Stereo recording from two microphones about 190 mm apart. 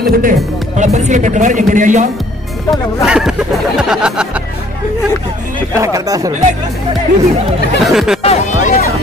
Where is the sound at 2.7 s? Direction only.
Centre (ahead or behind).